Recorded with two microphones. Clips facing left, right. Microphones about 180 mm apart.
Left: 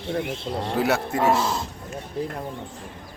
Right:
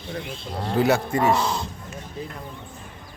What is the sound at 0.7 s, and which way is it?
Speech, centre (ahead or behind).